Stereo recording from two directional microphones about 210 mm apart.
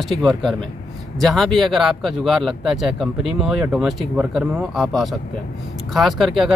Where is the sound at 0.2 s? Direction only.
Centre (ahead or behind).